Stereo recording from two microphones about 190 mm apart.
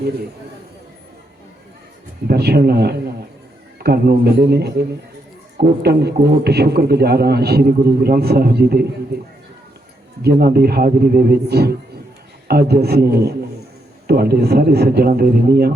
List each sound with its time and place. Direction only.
2.2 s a man's voice: 55° right (ahead or behind)
10.2 s a man's voice: 55° right (ahead or behind)